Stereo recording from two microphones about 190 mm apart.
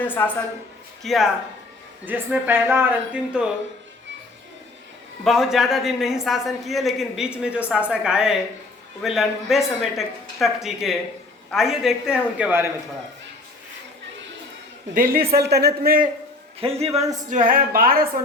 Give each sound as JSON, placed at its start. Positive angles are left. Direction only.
{"t": 0.0, "sound": "a woman's voice", "side_deg": 10}
{"t": 2.0, "sound": "speech", "side_deg": -10}
{"t": 5.2, "sound": "a woman's voice", "side_deg": 0}
{"t": 15.3, "sound": "a man's voice", "side_deg": -60}
{"t": 16.6, "sound": "a man's voice", "side_deg": -30}
{"t": 17.2, "sound": "a woman's voice", "side_deg": -45}